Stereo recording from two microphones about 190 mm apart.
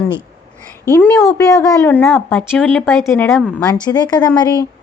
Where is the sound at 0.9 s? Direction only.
10° left (ahead or behind).